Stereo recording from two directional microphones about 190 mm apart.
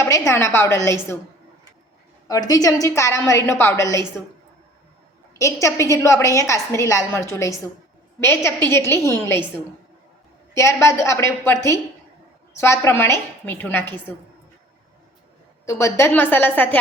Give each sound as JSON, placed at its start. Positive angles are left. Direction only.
{"t": 0.0, "sound": "a woman's voice", "side_deg": 15}
{"t": 2.5, "sound": "a woman's voice", "side_deg": 20}
{"t": 5.4, "sound": "a woman's voice", "side_deg": 15}
{"t": 10.5, "sound": "a woman's voice", "side_deg": 15}
{"t": 15.6, "sound": "a woman's voice", "side_deg": 15}